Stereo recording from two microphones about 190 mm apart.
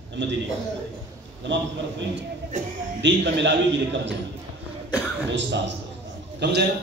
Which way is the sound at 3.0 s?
65° right (ahead or behind).